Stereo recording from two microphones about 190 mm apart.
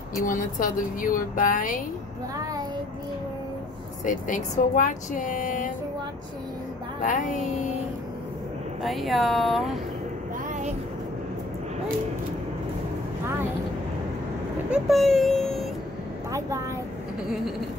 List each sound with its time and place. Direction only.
0.2 s speech: 45° left (ahead or behind)
4.0 s speech: 45° left (ahead or behind)
7.0 s music: 40° left (ahead or behind)
8.8 s speech: centre (ahead or behind)
14.7 s speech: centre (ahead or behind)
16.3 s a woman's voice: 15° right (ahead or behind)